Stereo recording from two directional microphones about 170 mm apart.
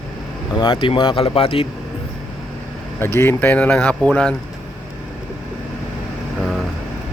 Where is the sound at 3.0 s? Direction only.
15° left (ahead or behind).